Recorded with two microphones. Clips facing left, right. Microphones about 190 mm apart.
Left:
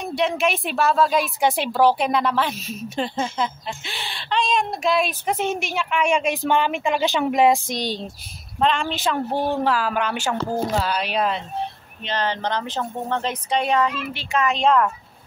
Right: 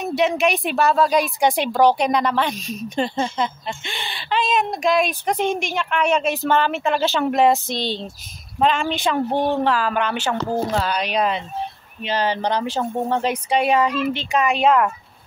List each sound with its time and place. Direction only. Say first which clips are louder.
0.0 s a woman's voice: right 3 dB; centre (ahead or behind)
7.7 s speech: right 1 dB; 45° left (ahead or behind)
8.5 s a woman's voice: right 2 dB; 5° right (ahead or behind)
12.0 s speech: right 3 dB; 10° right (ahead or behind)